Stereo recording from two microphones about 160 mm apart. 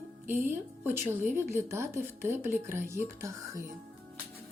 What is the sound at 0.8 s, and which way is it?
A woman's voice, 15° right (ahead or behind).